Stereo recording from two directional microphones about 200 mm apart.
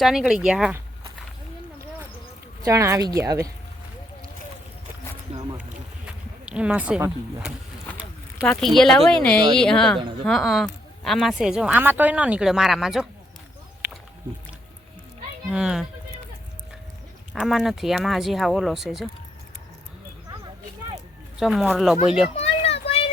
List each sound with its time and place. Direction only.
0.0 s speech: centre (ahead or behind)
2.6 s speech: 15° right (ahead or behind)
5.3 s a sound: 30° right (ahead or behind)
6.4 s speech: 5° right (ahead or behind)
15.4 s speech: 5° right (ahead or behind)
17.3 s speech: centre (ahead or behind)
21.3 s speech: centre (ahead or behind)
22.4 s a sound: 30° left (ahead or behind)